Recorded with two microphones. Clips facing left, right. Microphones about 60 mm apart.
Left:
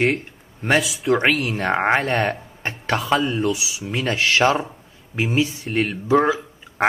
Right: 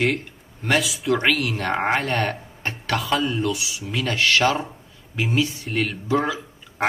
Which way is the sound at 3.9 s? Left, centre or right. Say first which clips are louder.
Left 1 dB; left.